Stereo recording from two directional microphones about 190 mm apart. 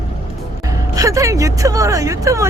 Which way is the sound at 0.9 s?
15° right (ahead or behind).